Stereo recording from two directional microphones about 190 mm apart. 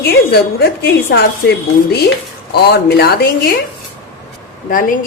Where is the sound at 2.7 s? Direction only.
60° left (ahead or behind).